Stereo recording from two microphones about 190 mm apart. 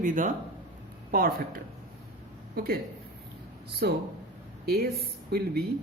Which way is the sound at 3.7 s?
60° right (ahead or behind).